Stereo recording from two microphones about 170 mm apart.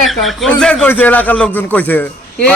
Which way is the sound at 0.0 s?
Centre (ahead or behind).